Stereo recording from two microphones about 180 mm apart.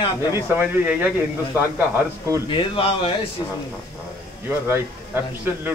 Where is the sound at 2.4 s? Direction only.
30° left (ahead or behind).